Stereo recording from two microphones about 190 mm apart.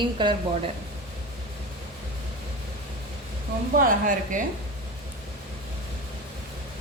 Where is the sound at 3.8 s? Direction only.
45° right (ahead or behind).